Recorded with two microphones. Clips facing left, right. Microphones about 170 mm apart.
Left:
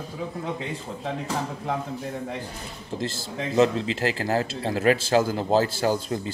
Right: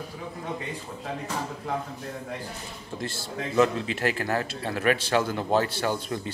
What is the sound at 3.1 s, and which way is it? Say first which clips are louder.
Speech: left 2 dB; 90° left.